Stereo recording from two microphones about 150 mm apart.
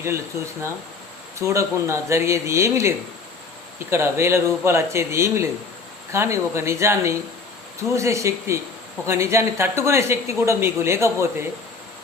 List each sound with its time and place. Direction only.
0.0 s speech: 20° right (ahead or behind)